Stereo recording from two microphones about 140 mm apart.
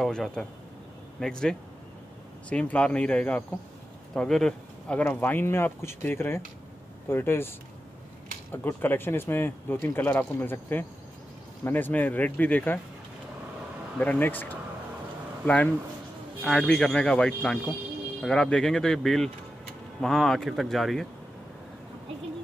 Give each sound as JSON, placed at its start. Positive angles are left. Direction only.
{"t": 0.0, "sound": "speech", "side_deg": 5}
{"t": 13.9, "sound": "speech", "side_deg": 10}